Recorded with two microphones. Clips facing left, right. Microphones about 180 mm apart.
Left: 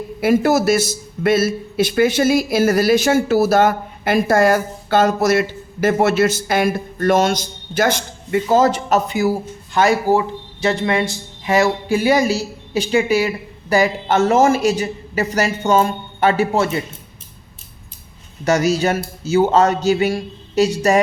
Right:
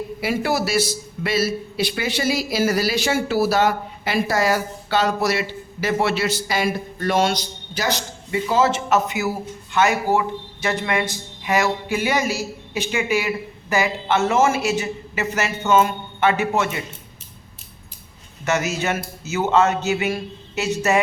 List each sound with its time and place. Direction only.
0.2 s a man's voice: 45° left (ahead or behind)
18.4 s speech: 35° left (ahead or behind)